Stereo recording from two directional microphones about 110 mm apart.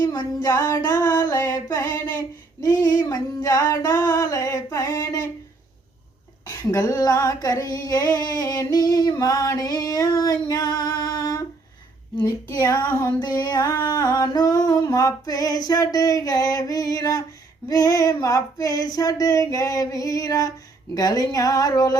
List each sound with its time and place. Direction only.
0.4 s female singing: 25° left (ahead or behind)
6.7 s female singing: 30° left (ahead or behind)
13.1 s female singing: 35° left (ahead or behind)